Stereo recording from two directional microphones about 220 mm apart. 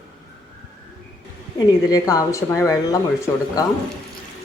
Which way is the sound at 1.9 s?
15° left (ahead or behind).